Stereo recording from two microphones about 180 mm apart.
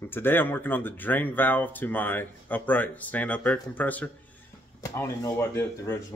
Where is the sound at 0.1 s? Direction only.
10° left (ahead or behind).